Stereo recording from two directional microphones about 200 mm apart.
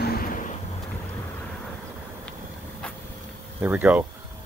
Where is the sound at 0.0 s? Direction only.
50° left (ahead or behind).